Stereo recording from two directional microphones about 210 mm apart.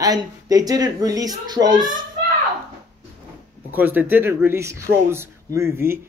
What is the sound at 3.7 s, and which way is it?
Speech, 10° right (ahead or behind).